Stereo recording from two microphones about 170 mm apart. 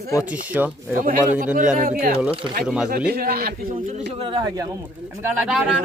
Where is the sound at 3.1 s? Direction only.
60° right (ahead or behind).